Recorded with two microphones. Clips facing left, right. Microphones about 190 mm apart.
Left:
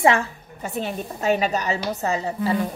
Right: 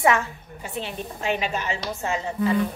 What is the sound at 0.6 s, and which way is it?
A woman's voice, 45° left (ahead or behind).